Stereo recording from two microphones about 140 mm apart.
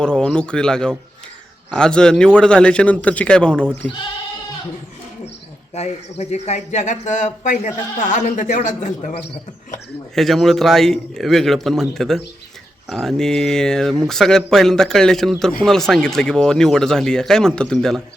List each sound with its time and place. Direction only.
0.0 s a man's voice: 5° left (ahead or behind)
5.7 s speech: 50° left (ahead or behind)
10.2 s speech: centre (ahead or behind)